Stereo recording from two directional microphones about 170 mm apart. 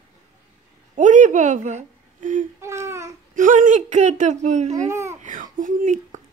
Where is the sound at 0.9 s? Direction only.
50° right (ahead or behind).